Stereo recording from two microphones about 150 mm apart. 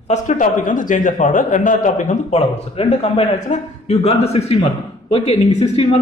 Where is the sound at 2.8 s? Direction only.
45° left (ahead or behind).